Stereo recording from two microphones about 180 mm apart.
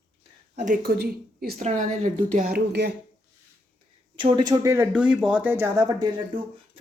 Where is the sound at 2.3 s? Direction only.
55° right (ahead or behind).